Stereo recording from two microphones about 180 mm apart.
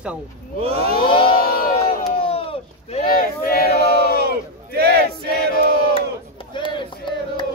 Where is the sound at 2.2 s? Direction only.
30° left (ahead or behind).